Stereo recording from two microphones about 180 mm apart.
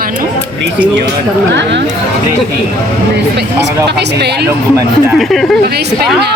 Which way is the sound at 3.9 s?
65° right (ahead or behind).